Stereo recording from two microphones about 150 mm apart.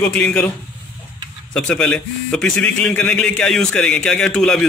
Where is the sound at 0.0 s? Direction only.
10° left (ahead or behind).